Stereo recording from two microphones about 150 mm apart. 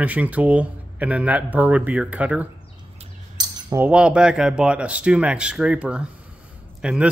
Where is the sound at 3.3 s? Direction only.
25° right (ahead or behind).